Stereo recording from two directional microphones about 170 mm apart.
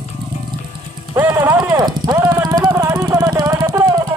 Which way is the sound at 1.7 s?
25° right (ahead or behind).